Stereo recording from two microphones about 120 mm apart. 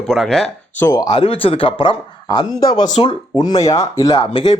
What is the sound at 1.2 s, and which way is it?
Speech, 50° left (ahead or behind).